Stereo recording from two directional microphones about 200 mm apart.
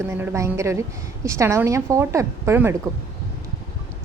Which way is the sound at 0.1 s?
10° right (ahead or behind).